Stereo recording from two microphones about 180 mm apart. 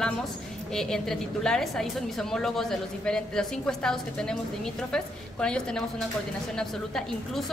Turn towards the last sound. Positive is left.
turn(degrees=5)  # may be behind; listen again after turning